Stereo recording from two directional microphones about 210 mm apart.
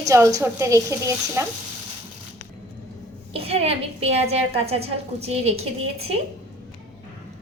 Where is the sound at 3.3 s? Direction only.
30° right (ahead or behind).